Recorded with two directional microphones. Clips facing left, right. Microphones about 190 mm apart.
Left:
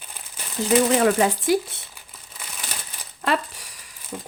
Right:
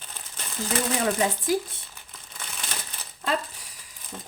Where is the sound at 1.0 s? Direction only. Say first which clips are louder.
Left 6 dB; 75° left (ahead or behind).